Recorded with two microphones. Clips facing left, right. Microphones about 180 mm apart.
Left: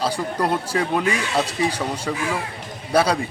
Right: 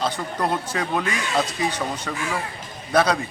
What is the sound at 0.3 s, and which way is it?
Speech, 10° left (ahead or behind).